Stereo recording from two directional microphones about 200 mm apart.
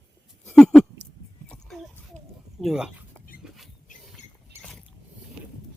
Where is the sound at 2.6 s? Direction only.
Centre (ahead or behind).